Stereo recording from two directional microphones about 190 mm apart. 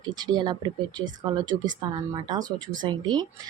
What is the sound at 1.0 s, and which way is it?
A woman's voice, 20° right (ahead or behind).